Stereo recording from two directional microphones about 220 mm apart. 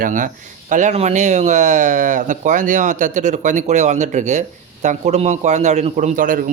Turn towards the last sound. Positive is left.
turn(degrees=-40)  # may be behind; listen again after turning